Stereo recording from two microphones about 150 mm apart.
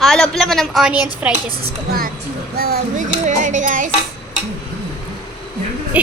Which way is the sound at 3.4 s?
60° right (ahead or behind).